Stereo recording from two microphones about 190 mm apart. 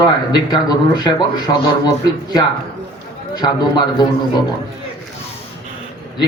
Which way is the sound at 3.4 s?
20° left (ahead or behind).